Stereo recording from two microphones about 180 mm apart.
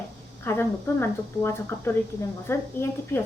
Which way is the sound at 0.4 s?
15° left (ahead or behind).